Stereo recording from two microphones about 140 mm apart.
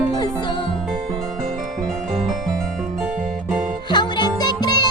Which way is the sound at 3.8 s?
30° left (ahead or behind).